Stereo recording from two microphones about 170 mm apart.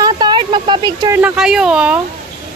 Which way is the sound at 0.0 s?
25° right (ahead or behind).